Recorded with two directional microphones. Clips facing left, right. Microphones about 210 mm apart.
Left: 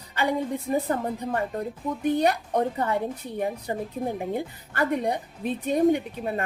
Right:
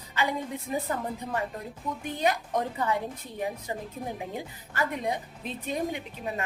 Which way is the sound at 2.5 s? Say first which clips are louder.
Left 5 dB; 35° left (ahead or behind).